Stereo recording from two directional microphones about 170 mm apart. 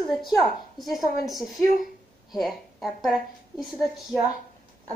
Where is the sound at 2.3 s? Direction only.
Centre (ahead or behind).